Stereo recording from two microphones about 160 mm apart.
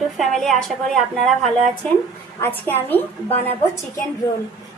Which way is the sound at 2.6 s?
10° left (ahead or behind).